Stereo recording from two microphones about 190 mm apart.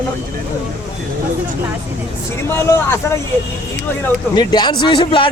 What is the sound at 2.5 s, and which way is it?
Speech, 10° left (ahead or behind).